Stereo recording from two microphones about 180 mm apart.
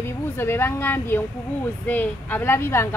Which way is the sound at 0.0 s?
15° left (ahead or behind).